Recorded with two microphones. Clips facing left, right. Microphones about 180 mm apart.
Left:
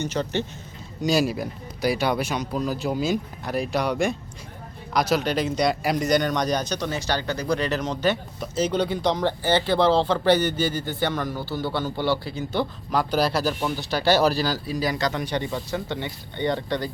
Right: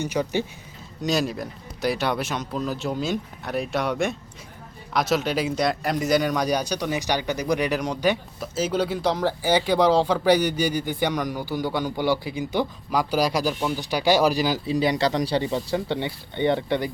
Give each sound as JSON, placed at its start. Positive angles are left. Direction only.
{"t": 0.0, "sound": "speech", "side_deg": -10}
{"t": 1.0, "sound": "speech", "side_deg": 5}
{"t": 15.4, "sound": "speech", "side_deg": -20}